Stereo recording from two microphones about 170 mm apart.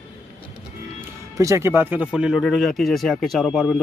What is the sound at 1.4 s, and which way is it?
Speech, 15° right (ahead or behind).